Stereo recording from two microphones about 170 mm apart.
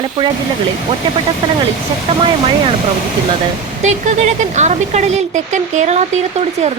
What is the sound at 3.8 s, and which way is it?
Speech, 45° right (ahead or behind).